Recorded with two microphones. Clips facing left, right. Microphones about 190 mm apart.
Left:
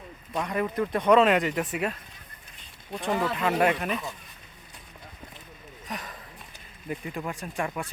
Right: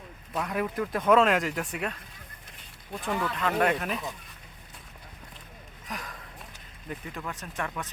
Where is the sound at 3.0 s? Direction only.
30° left (ahead or behind).